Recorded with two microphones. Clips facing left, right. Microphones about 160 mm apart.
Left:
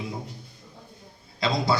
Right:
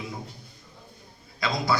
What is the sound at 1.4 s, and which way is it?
Speech, 30° left (ahead or behind).